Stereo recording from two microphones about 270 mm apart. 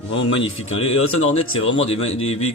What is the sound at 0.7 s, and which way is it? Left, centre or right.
Speech, left.